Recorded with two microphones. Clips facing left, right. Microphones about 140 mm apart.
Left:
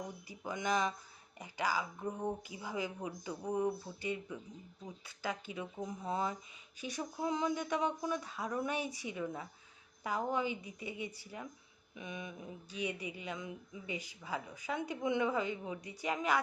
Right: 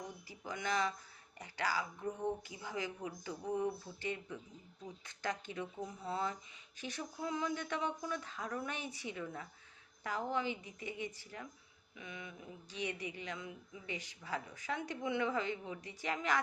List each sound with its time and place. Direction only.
0.3 s a woman's voice: 20° left (ahead or behind)
11.9 s a sound: 20° left (ahead or behind)
12.9 s a woman's voice: 10° left (ahead or behind)